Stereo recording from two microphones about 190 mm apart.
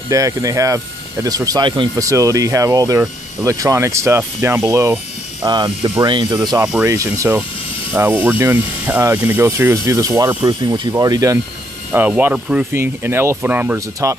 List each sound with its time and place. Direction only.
0.1 s speech: 15° right (ahead or behind)
6.6 s speech: 10° right (ahead or behind)